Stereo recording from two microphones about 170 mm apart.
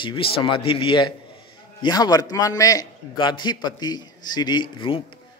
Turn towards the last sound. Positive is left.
turn(degrees=30)  # may be behind; listen again after turning